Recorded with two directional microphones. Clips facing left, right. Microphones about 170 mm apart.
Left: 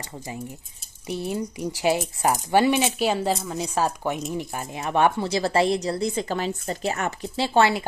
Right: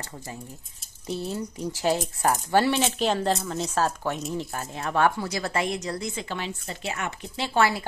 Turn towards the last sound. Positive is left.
turn(degrees=25)  # may be behind; listen again after turning